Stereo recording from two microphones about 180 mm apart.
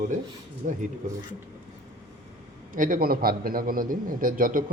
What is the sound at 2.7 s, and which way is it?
A man's voice, 50° right (ahead or behind).